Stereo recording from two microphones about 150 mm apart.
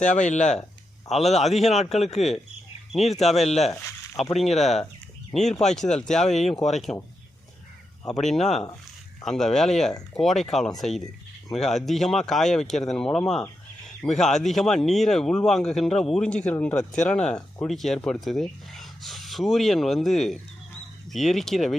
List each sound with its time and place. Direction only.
0.0 s speech: 55° left (ahead or behind)
1.4 s speech: centre (ahead or behind)
2.0 s speech: 50° left (ahead or behind)
3.7 s a sound: 20° left (ahead or behind)
4.2 s speech: centre (ahead or behind)
8.2 s speech: centre (ahead or behind)